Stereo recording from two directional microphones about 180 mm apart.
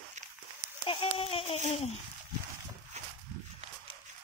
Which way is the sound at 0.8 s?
30° left (ahead or behind).